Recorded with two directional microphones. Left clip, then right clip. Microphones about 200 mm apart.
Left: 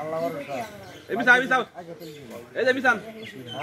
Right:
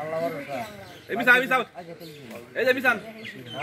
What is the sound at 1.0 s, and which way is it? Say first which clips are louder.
A man's voice: left 1 dB; 50° left (ahead or behind).